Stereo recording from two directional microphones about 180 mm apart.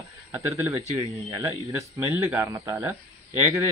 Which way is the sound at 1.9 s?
15° right (ahead or behind).